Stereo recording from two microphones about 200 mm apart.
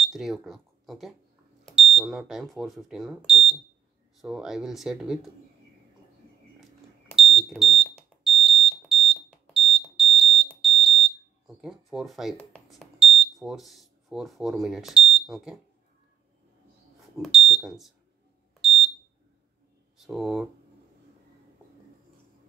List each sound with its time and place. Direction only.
0.0 s speech: centre (ahead or behind)
7.2 s smoke detector: centre (ahead or behind)
17.2 s speech: centre (ahead or behind)
20.0 s speech: centre (ahead or behind)